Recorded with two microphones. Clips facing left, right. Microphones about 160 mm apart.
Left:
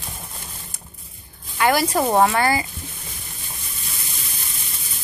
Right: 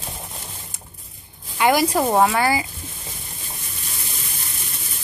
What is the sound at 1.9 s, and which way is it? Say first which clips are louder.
Speech: even; centre (ahead or behind).